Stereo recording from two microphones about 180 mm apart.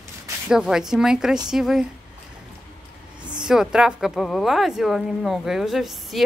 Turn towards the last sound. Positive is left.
turn(degrees=0)  # may be behind; listen again after turning